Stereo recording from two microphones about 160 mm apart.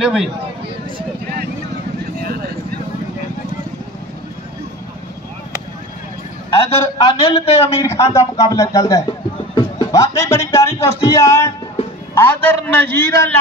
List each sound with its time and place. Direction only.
0.0 s speech: centre (ahead or behind)
7.0 s a man's voice: 35° left (ahead or behind)
7.8 s a man's voice: 20° left (ahead or behind)